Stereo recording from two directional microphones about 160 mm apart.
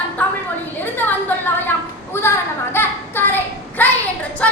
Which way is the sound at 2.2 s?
15° left (ahead or behind).